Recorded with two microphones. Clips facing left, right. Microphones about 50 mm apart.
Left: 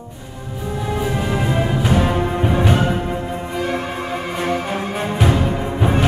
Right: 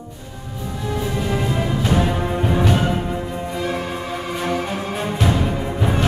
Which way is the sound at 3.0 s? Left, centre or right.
Left.